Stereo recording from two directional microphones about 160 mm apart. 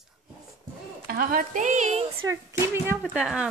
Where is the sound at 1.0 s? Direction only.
65° right (ahead or behind); by 2.0 s 45° right (ahead or behind).